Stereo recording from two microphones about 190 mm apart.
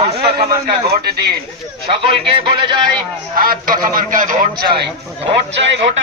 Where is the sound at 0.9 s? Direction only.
55° right (ahead or behind).